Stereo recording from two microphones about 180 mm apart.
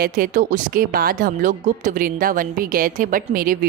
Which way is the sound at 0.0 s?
50° right (ahead or behind).